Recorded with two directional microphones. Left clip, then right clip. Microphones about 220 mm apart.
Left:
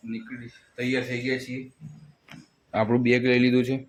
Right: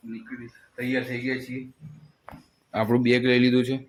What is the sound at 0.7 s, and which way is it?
Speech, 10° left (ahead or behind).